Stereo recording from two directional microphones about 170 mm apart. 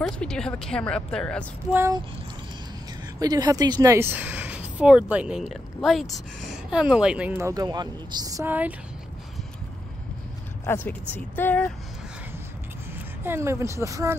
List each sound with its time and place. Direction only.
0.0 s speech: 5° left (ahead or behind)
1.7 s speech: 15° right (ahead or behind)
3.2 s speech: 20° right (ahead or behind)
10.6 s speech: 15° left (ahead or behind)
12.9 s speech: 15° right (ahead or behind)